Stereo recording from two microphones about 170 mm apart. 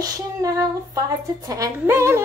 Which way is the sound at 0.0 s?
20° right (ahead or behind).